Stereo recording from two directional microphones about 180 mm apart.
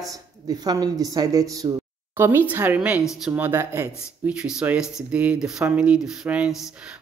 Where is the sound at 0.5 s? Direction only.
20° right (ahead or behind).